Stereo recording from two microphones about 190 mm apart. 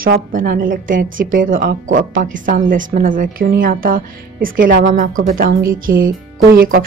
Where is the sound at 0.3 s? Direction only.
45° right (ahead or behind).